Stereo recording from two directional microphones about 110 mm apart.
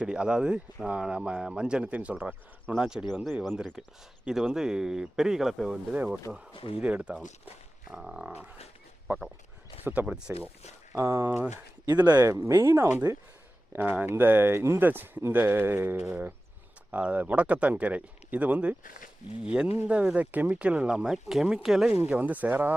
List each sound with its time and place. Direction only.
0.0 s speech: 10° right (ahead or behind)
6.5 s speech: 50° left (ahead or behind)
6.7 s speech: 10° right (ahead or behind)
7.4 s a sound: 15° right (ahead or behind)
8.0 s speech: 5° right (ahead or behind)
10.9 s speech: 25° right (ahead or behind)